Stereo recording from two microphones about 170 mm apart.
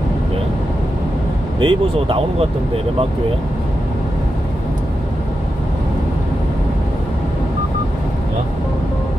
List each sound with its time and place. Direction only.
1.6 s speech: 30° right (ahead or behind)